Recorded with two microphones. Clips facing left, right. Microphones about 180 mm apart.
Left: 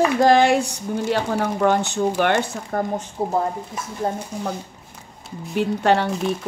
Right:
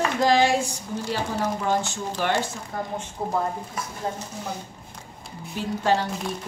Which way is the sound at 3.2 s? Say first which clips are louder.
Left 5 dB; 25° left (ahead or behind).